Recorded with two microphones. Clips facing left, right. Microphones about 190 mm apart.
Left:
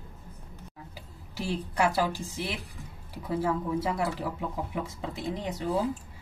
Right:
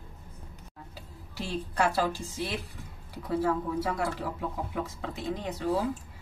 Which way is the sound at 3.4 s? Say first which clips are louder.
Even; 15° left (ahead or behind).